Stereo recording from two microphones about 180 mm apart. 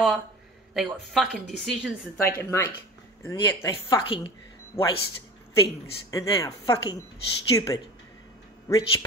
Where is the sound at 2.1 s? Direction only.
15° left (ahead or behind).